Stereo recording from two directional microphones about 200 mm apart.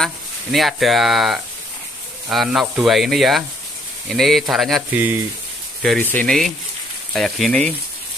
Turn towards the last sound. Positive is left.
turn(degrees=5)  # may be behind; listen again after turning